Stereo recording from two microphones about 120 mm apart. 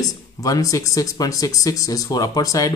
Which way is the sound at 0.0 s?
30° left (ahead or behind).